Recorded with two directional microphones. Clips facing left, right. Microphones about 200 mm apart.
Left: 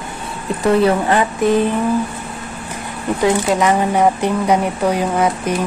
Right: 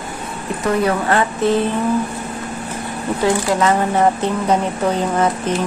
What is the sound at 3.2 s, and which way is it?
Speech, 15° left (ahead or behind).